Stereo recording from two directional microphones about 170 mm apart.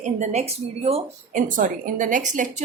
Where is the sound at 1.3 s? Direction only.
50° right (ahead or behind).